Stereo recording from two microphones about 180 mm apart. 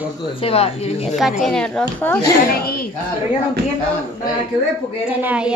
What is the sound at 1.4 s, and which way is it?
Speech, 5° left (ahead or behind).